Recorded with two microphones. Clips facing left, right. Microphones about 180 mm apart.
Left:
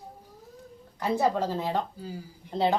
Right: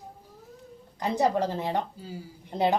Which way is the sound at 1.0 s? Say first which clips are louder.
Right 1 dB; 15° right (ahead or behind).